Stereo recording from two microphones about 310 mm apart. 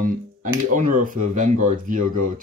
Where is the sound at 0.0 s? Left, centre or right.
Right.